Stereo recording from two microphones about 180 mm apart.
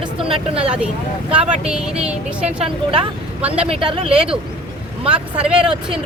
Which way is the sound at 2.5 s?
30° right (ahead or behind).